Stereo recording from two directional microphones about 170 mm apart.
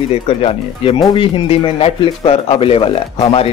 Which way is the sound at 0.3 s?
35° left (ahead or behind).